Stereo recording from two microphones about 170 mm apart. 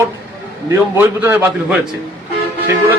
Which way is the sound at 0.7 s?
15° right (ahead or behind).